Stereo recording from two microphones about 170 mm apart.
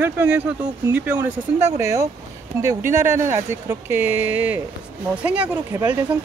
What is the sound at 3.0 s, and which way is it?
Speech, 50° right (ahead or behind).